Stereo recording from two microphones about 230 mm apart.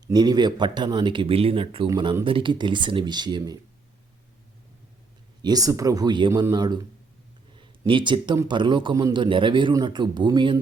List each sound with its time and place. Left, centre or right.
0.1 s speech: centre
5.4 s speech: centre